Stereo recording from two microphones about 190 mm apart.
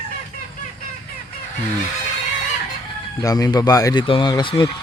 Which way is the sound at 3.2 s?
20° left (ahead or behind).